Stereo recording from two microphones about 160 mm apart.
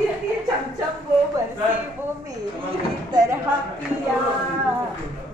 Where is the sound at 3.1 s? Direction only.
20° right (ahead or behind).